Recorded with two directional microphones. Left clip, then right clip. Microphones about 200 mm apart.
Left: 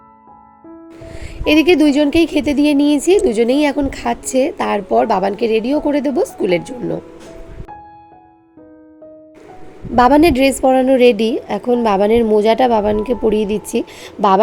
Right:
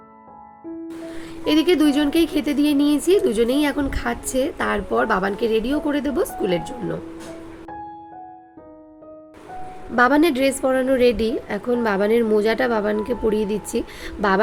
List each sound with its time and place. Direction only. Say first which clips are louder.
1.1 s speech: left 7 dB; 20° left (ahead or behind)
9.9 s speech: left 6 dB; 15° left (ahead or behind)